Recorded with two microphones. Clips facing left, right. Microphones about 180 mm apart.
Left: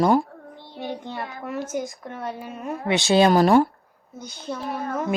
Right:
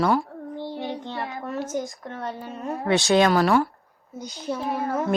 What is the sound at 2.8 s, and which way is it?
Speech, 30° left (ahead or behind).